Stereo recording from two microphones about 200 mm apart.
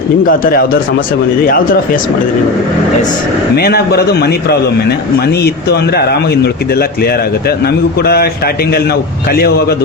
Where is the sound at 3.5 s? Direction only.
50° left (ahead or behind).